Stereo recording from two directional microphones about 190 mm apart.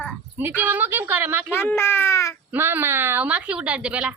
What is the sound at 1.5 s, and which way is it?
Babbling, 10° left (ahead or behind).